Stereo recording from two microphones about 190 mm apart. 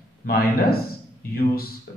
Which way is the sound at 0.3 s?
55° left (ahead or behind).